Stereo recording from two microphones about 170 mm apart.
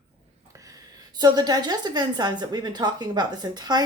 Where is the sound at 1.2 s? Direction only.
25° right (ahead or behind).